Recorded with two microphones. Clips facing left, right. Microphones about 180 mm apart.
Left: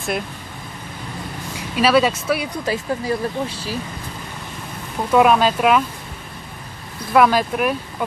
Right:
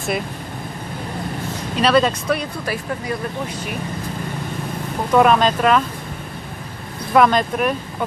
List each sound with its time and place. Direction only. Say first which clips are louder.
1.8 s speech: even; 5° left (ahead or behind)
2.6 s speech: left 3 dB; 25° left (ahead or behind)
5.1 s speech: even; 5° left (ahead or behind)
7.2 s speech: even; 5° left (ahead or behind)